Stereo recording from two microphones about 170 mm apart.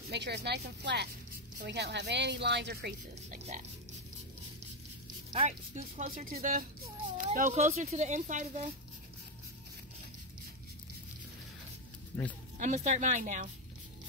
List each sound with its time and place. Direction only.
0.1 s speech: 85° right
1.6 s a woman's voice: 85° right
3.3 s speech: 50° right (ahead or behind)
5.5 s speech: 55° right (ahead or behind)
12.5 s speech: 45° right (ahead or behind)